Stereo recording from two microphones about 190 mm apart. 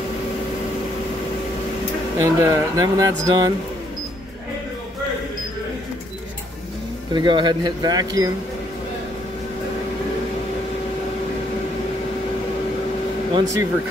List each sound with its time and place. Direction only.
2.2 s speech: 15° right (ahead or behind)
7.2 s speech: 25° right (ahead or behind)
13.3 s speech: 20° right (ahead or behind)